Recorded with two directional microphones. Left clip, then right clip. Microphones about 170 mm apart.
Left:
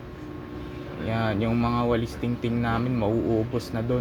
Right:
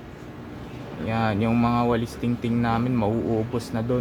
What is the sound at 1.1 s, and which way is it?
Speech, 15° right (ahead or behind).